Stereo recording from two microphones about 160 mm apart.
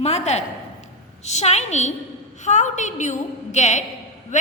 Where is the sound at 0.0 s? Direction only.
45° left (ahead or behind).